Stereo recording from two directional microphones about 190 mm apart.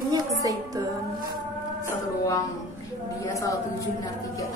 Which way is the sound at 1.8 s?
15° left (ahead or behind).